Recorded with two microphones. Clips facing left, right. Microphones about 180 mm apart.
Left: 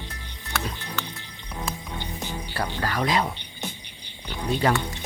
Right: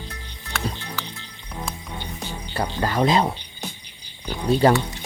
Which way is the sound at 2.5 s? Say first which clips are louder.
Right 5 dB; 20° right (ahead or behind).